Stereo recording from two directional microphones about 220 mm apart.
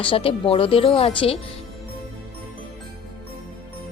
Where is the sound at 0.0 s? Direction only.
25° left (ahead or behind).